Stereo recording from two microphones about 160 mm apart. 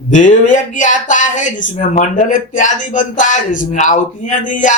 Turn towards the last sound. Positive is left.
turn(degrees=55)  # may be behind; listen again after turning